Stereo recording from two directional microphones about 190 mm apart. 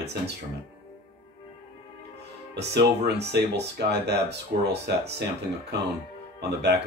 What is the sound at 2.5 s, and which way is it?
Speech, 60° right (ahead or behind).